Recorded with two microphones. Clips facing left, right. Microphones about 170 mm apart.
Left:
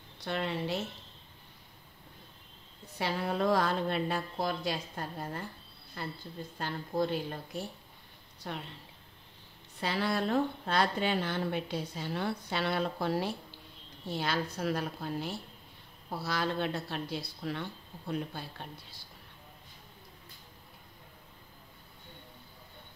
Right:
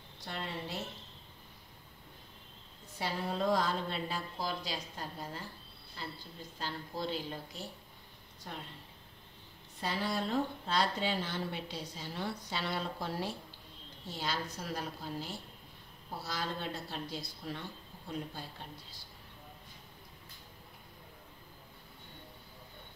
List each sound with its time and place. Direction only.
0.2 s a woman's voice: 75° left (ahead or behind)
3.0 s a woman's voice: 65° left (ahead or behind)
8.5 s a woman's voice: 75° left (ahead or behind)
9.8 s a woman's voice: 70° left (ahead or behind)